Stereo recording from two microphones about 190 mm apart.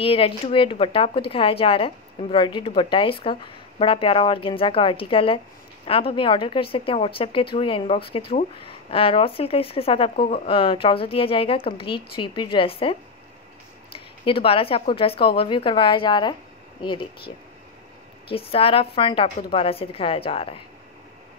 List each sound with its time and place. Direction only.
0.0 s speech: 30° left (ahead or behind)
13.9 s speech: 30° left (ahead or behind)
18.3 s speech: 30° left (ahead or behind)